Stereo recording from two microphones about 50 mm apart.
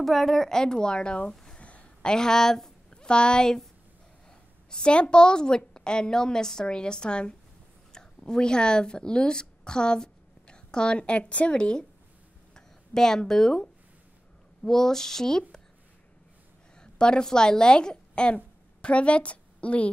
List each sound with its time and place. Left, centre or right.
0.0 s a woman's voice: centre
1.5 s a sound: left
4.6 s a woman's voice: centre
12.5 s a sound: centre
13.3 s a woman's voice: centre
16.8 s a woman's voice: centre